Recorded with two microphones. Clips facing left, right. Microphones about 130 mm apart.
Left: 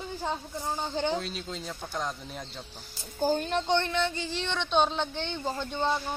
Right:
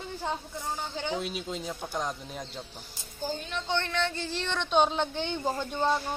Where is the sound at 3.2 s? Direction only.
45° left (ahead or behind).